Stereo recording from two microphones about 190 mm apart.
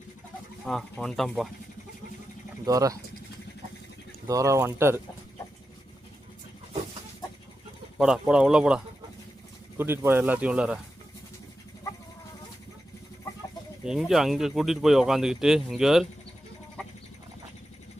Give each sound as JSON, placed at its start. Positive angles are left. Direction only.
{"t": 0.6, "sound": "speech", "side_deg": 0}
{"t": 2.6, "sound": "speech", "side_deg": -20}
{"t": 4.3, "sound": "speech", "side_deg": -15}
{"t": 7.9, "sound": "speech", "side_deg": -5}
{"t": 13.8, "sound": "speech", "side_deg": 0}